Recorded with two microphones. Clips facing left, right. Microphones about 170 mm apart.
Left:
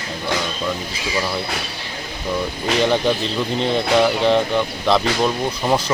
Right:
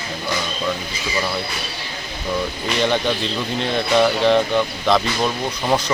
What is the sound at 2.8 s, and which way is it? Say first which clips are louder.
Speech: left 2 dB; centre (ahead or behind).